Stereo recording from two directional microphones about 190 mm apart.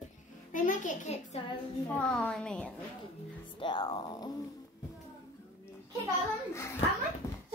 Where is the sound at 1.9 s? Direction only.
5° left (ahead or behind).